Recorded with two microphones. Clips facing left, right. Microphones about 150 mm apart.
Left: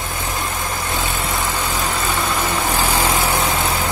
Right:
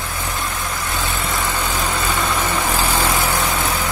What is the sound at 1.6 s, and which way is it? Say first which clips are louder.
Vehicle: even; centre (ahead or behind).